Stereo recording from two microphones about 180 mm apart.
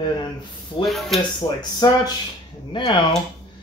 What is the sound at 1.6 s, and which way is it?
Speech, 20° left (ahead or behind).